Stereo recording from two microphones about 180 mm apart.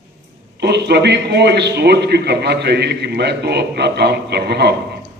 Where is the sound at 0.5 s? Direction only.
70° right (ahead or behind).